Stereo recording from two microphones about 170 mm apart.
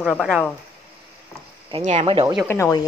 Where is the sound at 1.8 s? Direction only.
40° right (ahead or behind).